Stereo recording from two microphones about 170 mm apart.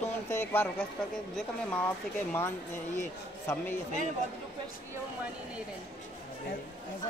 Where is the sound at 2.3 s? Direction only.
15° left (ahead or behind).